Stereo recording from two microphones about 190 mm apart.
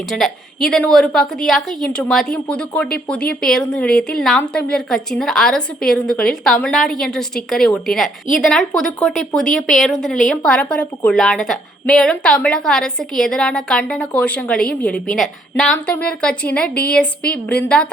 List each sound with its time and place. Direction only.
0.1 s a woman's voice: centre (ahead or behind)
17.7 s a woman's voice: 5° left (ahead or behind)